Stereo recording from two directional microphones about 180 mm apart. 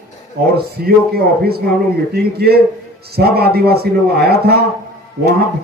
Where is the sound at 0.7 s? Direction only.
60° right (ahead or behind).